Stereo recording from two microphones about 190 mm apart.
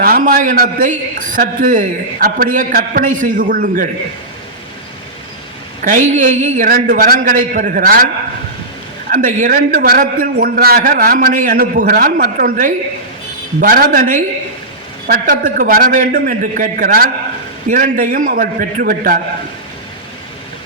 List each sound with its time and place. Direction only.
0.0 s a man's voice: 50° right (ahead or behind)
5.8 s a man's voice: 40° right (ahead or behind)
9.0 s a man's voice: 45° right (ahead or behind)